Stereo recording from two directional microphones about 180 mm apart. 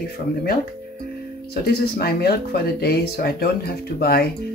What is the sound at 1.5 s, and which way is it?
Speech, 60° left (ahead or behind).